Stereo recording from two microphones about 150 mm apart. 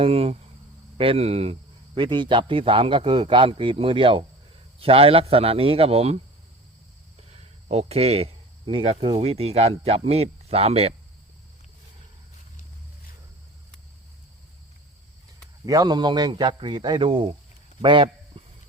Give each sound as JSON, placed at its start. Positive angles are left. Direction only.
{"t": 0.0, "sound": "a man's voice", "side_deg": -40}
{"t": 2.0, "sound": "a man's voice", "side_deg": -30}
{"t": 7.2, "sound": "speech", "side_deg": -45}
{"t": 15.6, "sound": "a man's voice", "side_deg": -25}
{"t": 17.8, "sound": "a sound", "side_deg": -35}